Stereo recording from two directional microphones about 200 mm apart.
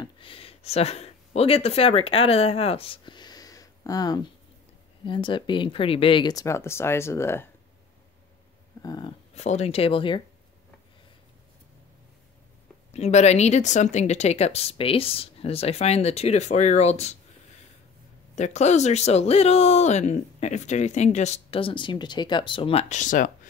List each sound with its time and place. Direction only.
0.0 s speech: 25° left (ahead or behind)
8.8 s speech: 20° left (ahead or behind)
9.3 s speech: 35° left (ahead or behind)
12.9 s speech: 35° left (ahead or behind)
18.3 s speech: 35° left (ahead or behind)